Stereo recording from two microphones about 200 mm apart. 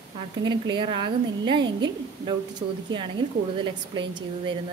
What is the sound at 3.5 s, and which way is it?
A woman's voice, 25° right (ahead or behind).